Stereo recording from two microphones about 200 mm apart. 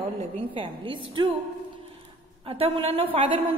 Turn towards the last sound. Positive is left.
turn(degrees=-25)  # may be behind; listen again after turning